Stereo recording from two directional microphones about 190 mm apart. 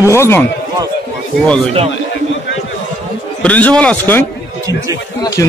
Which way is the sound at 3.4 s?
5° left (ahead or behind).